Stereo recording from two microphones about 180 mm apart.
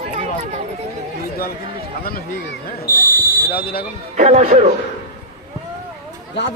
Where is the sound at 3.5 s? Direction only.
55° left (ahead or behind).